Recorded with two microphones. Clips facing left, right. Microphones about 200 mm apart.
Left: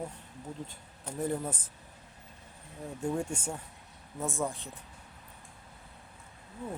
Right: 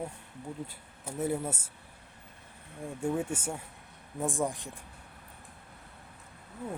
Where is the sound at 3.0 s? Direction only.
5° right (ahead or behind).